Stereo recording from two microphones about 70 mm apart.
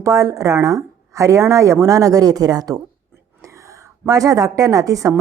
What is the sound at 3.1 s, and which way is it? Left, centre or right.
A woman's voice, right.